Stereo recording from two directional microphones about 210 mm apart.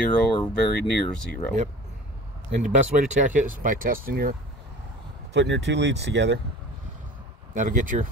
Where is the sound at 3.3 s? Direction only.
40° right (ahead or behind).